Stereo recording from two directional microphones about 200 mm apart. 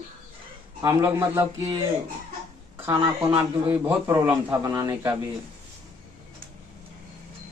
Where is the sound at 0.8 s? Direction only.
10° right (ahead or behind).